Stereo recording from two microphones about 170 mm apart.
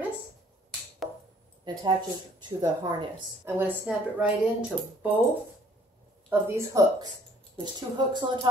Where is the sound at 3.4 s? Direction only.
10° right (ahead or behind).